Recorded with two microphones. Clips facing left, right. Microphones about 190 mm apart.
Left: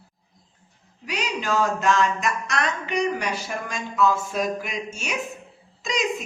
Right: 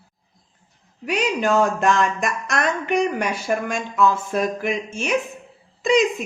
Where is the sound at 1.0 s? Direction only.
55° right (ahead or behind).